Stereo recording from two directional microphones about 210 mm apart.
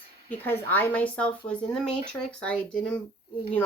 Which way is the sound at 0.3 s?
10° left (ahead or behind).